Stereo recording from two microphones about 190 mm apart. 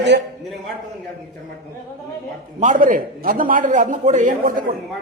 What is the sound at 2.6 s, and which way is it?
A man's voice, 45° right (ahead or behind).